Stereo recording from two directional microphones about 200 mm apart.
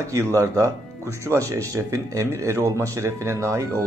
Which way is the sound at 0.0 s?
15° right (ahead or behind).